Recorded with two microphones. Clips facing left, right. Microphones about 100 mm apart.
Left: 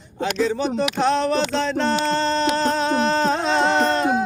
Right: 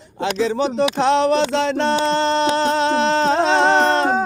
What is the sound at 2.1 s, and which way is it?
Chant, 20° right (ahead or behind).